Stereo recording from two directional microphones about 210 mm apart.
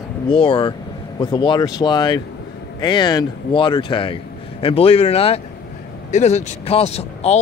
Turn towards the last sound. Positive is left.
turn(degrees=30)  # may be behind; listen again after turning